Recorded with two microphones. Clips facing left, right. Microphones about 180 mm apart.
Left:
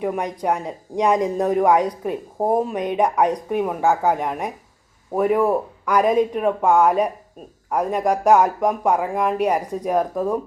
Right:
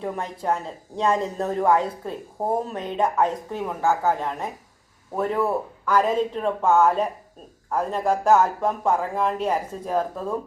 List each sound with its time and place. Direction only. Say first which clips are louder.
0.0 s speech: left 5 dB; 15° left (ahead or behind)